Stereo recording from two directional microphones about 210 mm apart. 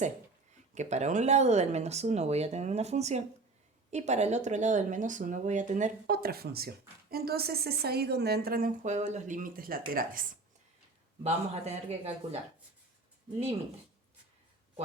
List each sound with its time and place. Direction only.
0.7 s a woman's voice: 35° right (ahead or behind)
11.2 s speech: 30° right (ahead or behind)